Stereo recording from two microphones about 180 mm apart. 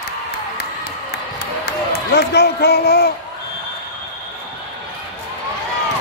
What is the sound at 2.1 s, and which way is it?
A man's voice, 65° left (ahead or behind).